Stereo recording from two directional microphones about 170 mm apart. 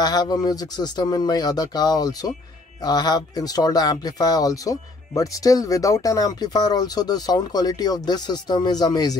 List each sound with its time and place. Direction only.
0.0 s speech: 25° left (ahead or behind)